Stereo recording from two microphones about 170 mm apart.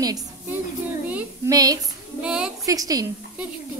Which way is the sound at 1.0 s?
10° right (ahead or behind).